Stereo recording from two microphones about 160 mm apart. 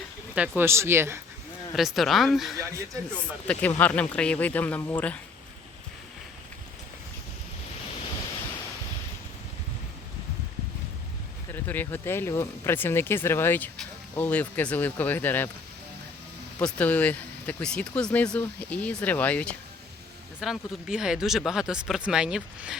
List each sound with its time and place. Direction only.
0.3 s speech: 10° right (ahead or behind)
1.7 s speech: centre (ahead or behind)
2.6 s speech: 15° right (ahead or behind)
3.2 s speech: 10° left (ahead or behind)
11.5 s speech: 10° left (ahead or behind)
16.6 s speech: 10° left (ahead or behind)
20.4 s speech: 5° right (ahead or behind)